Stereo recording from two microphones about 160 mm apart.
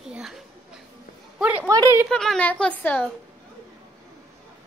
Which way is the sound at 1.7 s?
20° right (ahead or behind).